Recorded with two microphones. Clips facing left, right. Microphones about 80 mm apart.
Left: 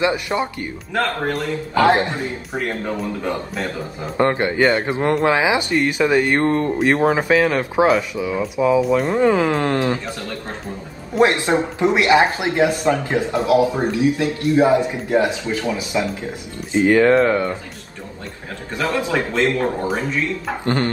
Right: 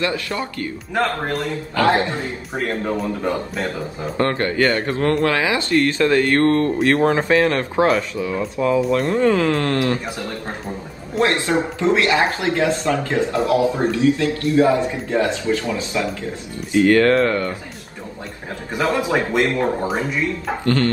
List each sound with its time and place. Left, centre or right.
0.0 s speech: centre
1.8 s speech: left
2.5 s speech: centre
4.2 s speech: centre
9.1 s speech: centre
11.1 s speech: left
18.9 s speech: centre
20.6 s speech: left